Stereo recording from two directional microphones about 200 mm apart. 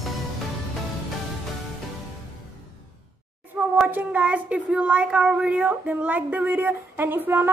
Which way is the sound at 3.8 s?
10° right (ahead or behind).